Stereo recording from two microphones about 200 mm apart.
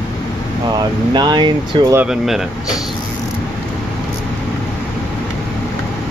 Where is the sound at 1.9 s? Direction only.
Centre (ahead or behind).